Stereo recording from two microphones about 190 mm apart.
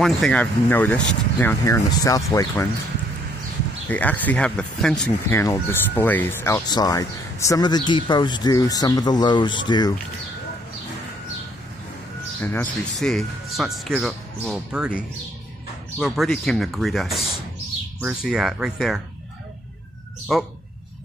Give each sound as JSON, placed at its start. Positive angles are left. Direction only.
{"t": 0.0, "sound": "speech", "side_deg": 5}
{"t": 3.9, "sound": "speech", "side_deg": 10}
{"t": 12.4, "sound": "speech", "side_deg": 10}
{"t": 16.0, "sound": "speech", "side_deg": 0}
{"t": 18.3, "sound": "speech", "side_deg": 0}
{"t": 20.3, "sound": "speech", "side_deg": 0}